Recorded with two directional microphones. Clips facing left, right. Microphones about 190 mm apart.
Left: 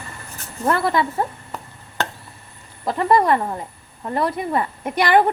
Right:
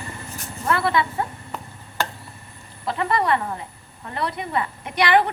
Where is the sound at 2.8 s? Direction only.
45° left (ahead or behind).